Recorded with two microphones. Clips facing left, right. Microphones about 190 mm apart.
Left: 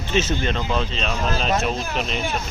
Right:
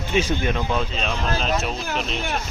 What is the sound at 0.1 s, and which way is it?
Speech, 15° right (ahead or behind).